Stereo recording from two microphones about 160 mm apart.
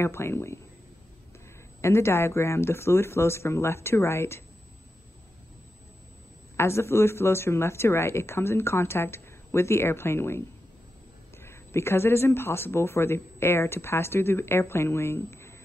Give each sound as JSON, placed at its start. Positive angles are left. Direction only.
{"t": 0.0, "sound": "speech", "side_deg": 15}
{"t": 1.8, "sound": "speech", "side_deg": 15}
{"t": 6.5, "sound": "speech", "side_deg": 15}